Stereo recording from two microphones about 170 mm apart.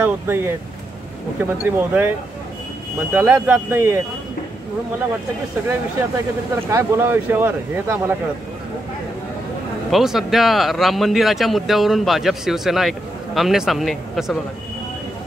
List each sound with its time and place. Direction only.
0.0 s speech: 15° right (ahead or behind)
6.7 s speech: 15° right (ahead or behind)
9.8 s speech: centre (ahead or behind)